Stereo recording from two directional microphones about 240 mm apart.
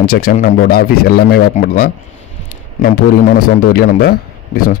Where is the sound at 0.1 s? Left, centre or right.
Left.